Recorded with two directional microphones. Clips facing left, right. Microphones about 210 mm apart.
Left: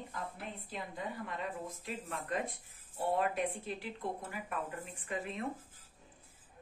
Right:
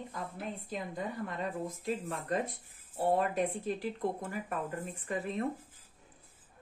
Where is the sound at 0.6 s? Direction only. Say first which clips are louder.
Right 3 dB; 45° right (ahead or behind).